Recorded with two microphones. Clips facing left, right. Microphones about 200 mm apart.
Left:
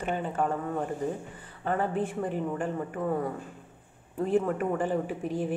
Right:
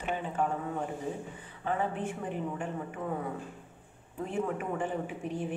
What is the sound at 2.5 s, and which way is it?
Speech, 50° left (ahead or behind).